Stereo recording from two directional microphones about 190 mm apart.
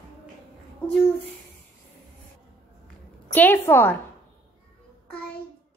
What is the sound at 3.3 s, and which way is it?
Speech, 10° left (ahead or behind).